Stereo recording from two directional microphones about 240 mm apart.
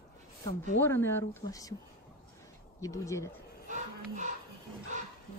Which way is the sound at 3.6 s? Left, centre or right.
Right.